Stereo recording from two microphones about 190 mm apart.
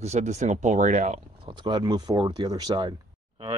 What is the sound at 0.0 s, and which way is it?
Speech, 35° right (ahead or behind).